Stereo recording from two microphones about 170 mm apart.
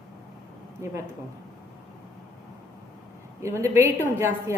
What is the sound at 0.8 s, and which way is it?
Speech, 15° right (ahead or behind).